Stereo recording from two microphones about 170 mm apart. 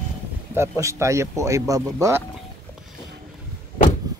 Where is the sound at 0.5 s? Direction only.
15° right (ahead or behind).